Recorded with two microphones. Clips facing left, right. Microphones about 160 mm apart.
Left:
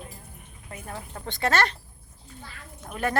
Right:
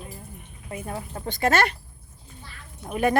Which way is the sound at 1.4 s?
10° right (ahead or behind).